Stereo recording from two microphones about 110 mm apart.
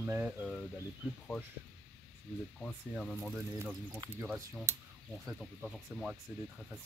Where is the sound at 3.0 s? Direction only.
Centre (ahead or behind).